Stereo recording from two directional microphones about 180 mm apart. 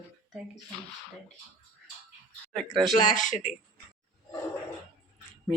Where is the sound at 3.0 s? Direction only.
45° left (ahead or behind).